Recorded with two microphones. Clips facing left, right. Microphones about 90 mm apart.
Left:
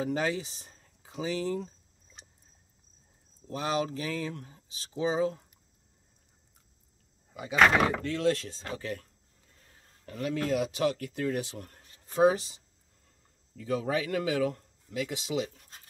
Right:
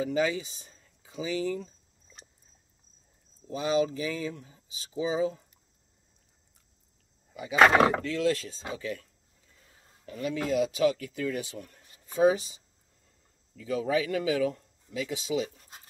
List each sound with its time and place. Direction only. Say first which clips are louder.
0.0 s speech: right 2 dB; 55° left (ahead or behind)
3.4 s speech: right 4 dB; 55° left (ahead or behind)
8.0 s speech: even; 55° left (ahead or behind)
10.0 s speech: even; 55° left (ahead or behind)
13.6 s speech: right 2 dB; 45° left (ahead or behind)